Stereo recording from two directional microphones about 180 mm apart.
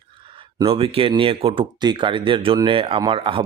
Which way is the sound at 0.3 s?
30° right (ahead or behind).